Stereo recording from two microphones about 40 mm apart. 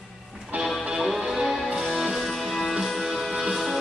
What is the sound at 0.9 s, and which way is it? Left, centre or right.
Music, centre.